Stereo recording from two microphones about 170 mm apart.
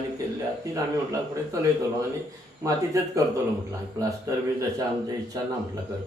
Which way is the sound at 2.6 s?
20° right (ahead or behind).